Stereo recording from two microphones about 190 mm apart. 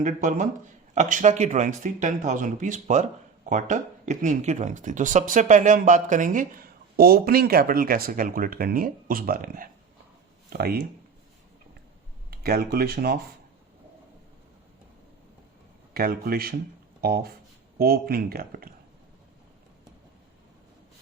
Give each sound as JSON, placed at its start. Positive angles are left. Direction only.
{"t": 0.0, "sound": "speech", "side_deg": -40}
{"t": 12.3, "sound": "speech", "side_deg": -55}
{"t": 16.0, "sound": "speech", "side_deg": -50}